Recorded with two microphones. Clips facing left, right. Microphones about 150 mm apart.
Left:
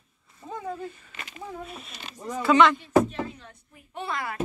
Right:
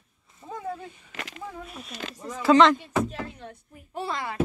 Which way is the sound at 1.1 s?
90° right.